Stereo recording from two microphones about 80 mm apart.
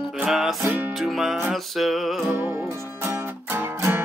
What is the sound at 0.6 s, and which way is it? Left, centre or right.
Music, right.